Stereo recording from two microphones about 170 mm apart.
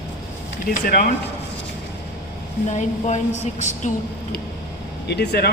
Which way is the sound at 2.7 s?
45° left (ahead or behind).